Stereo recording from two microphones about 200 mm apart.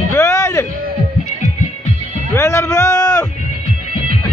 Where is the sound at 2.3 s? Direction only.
15° left (ahead or behind).